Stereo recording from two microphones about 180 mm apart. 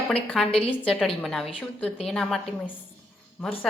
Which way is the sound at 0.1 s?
5° left (ahead or behind).